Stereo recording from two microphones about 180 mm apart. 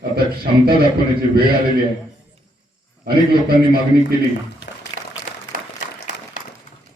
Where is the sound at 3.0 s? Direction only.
60° right (ahead or behind).